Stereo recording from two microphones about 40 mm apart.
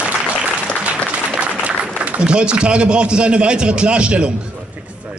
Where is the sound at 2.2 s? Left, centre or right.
Right.